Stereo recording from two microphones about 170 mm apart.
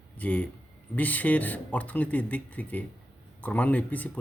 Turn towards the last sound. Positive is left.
turn(degrees=10)  # may be behind; listen again after turning